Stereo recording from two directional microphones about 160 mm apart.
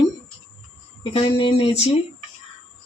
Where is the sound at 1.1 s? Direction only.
35° left (ahead or behind).